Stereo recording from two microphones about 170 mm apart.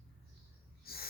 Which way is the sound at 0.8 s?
65° left (ahead or behind).